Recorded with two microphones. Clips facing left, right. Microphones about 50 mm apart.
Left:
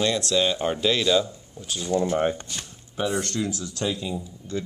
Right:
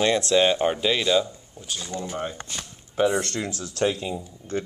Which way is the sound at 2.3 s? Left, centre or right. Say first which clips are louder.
Even; right.